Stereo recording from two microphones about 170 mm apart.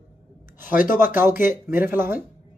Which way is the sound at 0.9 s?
15° right (ahead or behind).